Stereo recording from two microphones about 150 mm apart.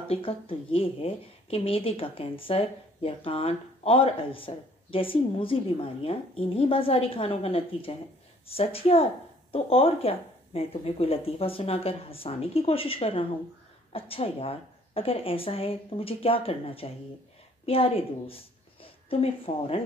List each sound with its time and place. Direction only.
0.1 s a woman's voice: 35° left (ahead or behind)